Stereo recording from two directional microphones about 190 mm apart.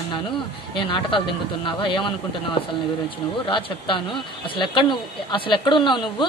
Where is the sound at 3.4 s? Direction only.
25° left (ahead or behind).